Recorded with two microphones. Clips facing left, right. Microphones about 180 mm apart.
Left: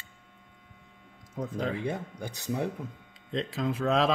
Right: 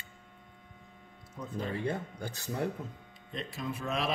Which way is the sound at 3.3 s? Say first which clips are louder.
Left 7 dB; 90° left.